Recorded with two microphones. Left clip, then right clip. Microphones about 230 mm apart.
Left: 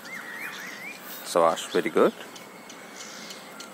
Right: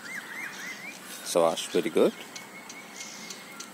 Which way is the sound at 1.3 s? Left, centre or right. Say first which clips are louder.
Left 2 dB; centre.